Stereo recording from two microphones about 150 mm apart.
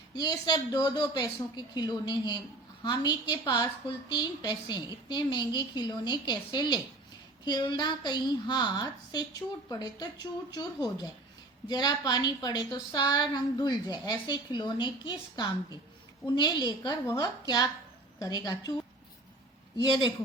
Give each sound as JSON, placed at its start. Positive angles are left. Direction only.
{"t": 0.1, "sound": "a woman's voice", "side_deg": 25}
{"t": 19.8, "sound": "a woman's voice", "side_deg": 30}